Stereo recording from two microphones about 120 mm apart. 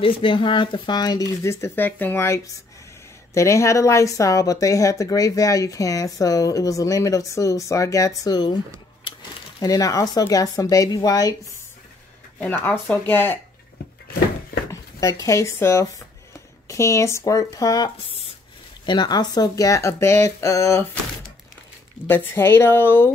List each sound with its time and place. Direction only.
0.0 s speech: 45° left (ahead or behind)
9.6 s speech: 30° left (ahead or behind)
12.4 s speech: 15° left (ahead or behind)
14.7 s speech: 30° left (ahead or behind)
22.0 s speech: 20° left (ahead or behind)